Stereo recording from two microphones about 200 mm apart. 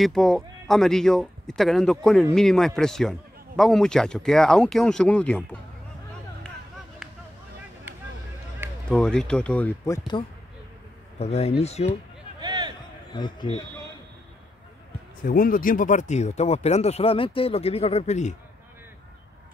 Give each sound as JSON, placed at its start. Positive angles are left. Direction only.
{"t": 0.0, "sound": "a man's voice", "side_deg": 0}
{"t": 7.0, "sound": "a sound", "side_deg": -5}
{"t": 8.8, "sound": "a man's voice", "side_deg": 5}
{"t": 11.1, "sound": "speech", "side_deg": 30}
{"t": 12.4, "sound": "a sound", "side_deg": -20}
{"t": 13.1, "sound": "a man's voice", "side_deg": 20}
{"t": 15.2, "sound": "speech", "side_deg": 45}